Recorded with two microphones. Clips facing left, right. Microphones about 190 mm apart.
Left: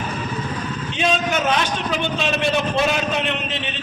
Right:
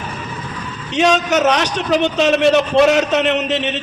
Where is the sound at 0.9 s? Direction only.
75° right (ahead or behind).